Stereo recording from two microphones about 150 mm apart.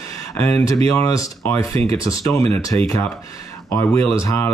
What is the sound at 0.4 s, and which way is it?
Speech, 15° left (ahead or behind).